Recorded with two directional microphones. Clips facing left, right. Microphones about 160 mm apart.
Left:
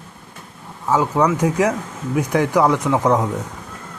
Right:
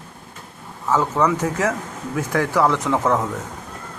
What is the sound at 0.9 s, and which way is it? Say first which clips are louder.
Speech: left 2 dB; 10° left (ahead or behind).